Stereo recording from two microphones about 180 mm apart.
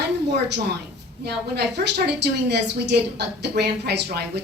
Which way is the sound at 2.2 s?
70° right (ahead or behind).